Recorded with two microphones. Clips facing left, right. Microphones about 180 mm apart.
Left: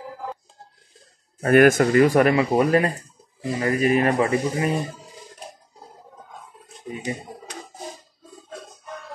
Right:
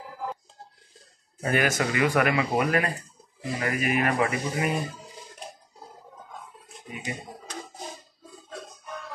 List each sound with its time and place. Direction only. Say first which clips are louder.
1.4 s speech: left 10 dB; 55° left (ahead or behind); by 4.7 s 30° left (ahead or behind)